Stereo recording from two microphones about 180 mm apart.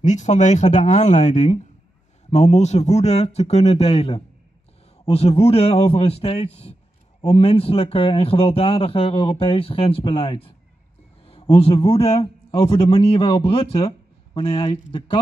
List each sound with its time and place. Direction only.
0.0 s a man's voice: 40° left (ahead or behind); by 15.1 s 25° left (ahead or behind)